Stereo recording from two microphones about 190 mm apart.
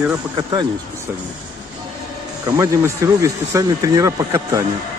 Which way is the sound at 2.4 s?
15° right (ahead or behind).